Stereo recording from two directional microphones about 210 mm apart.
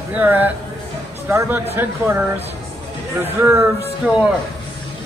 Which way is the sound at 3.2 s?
10° right (ahead or behind).